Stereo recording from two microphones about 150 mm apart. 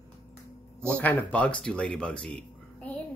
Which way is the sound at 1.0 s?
10° left (ahead or behind).